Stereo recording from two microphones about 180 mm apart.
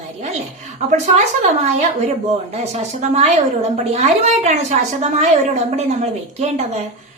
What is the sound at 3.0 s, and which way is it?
A woman's voice, 40° right (ahead or behind).